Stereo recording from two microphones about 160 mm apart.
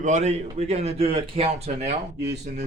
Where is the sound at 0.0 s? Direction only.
45° right (ahead or behind).